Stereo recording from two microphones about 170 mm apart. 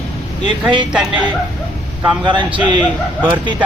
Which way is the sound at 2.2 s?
25° right (ahead or behind).